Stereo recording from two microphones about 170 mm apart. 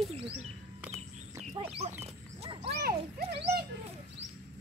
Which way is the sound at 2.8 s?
65° right (ahead or behind).